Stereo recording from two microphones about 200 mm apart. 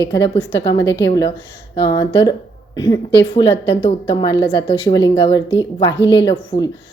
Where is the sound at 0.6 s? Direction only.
20° left (ahead or behind).